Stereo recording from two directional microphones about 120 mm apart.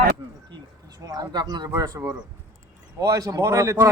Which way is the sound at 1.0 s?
35° right (ahead or behind).